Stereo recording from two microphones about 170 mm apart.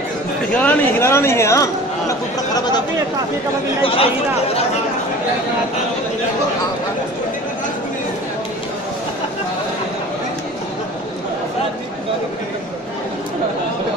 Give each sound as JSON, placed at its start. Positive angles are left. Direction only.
{"t": 0.6, "sound": "speech", "side_deg": 10}
{"t": 3.8, "sound": "speech", "side_deg": 35}